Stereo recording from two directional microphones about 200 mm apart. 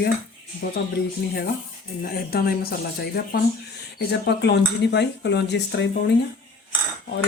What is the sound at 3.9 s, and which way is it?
Speech, 55° left (ahead or behind).